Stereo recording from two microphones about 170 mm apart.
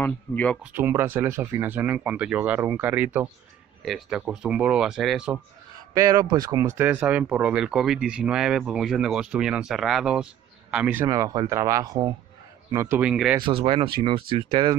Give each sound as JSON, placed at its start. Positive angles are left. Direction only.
{"t": 0.0, "sound": "speech", "side_deg": 10}
{"t": 0.6, "sound": "speech", "side_deg": -10}
{"t": 5.9, "sound": "speech", "side_deg": -20}
{"t": 6.8, "sound": "speech", "side_deg": -10}
{"t": 12.9, "sound": "speech", "side_deg": -5}
{"t": 13.4, "sound": "speech", "side_deg": -30}